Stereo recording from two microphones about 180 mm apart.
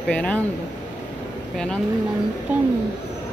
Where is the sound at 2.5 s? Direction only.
10° right (ahead or behind).